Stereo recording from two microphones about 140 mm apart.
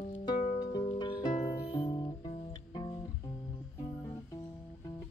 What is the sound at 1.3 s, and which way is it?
Music, 55° left (ahead or behind).